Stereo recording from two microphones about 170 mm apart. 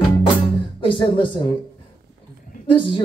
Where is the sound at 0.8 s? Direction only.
30° left (ahead or behind).